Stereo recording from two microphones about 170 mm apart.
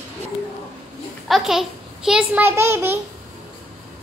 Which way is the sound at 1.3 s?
Centre (ahead or behind).